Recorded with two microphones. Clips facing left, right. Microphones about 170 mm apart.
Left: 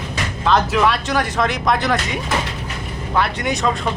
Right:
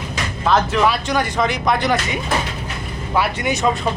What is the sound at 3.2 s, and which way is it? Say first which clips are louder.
Speech: right 1 dB; 5° right (ahead or behind).